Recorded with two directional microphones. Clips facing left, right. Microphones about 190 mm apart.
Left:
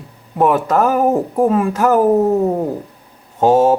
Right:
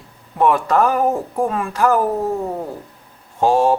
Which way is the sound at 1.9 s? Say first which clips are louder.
Left 10 dB; 20° left (ahead or behind).